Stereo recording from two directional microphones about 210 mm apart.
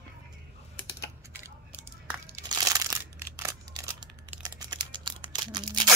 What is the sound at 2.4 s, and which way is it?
Crumpling, 20° right (ahead or behind).